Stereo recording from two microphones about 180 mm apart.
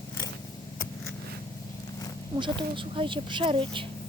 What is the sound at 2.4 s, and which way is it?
Speech, 25° right (ahead or behind).